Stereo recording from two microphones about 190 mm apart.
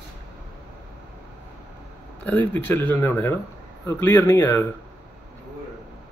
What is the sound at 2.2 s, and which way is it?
Speech, 10° left (ahead or behind).